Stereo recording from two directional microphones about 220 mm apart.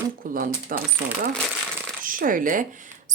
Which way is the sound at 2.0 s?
40° right (ahead or behind).